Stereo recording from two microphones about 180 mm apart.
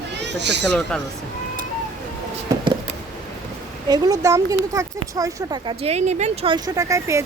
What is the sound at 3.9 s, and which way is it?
Speech, 20° right (ahead or behind).